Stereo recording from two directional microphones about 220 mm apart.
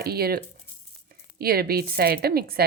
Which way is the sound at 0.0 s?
45° right (ahead or behind).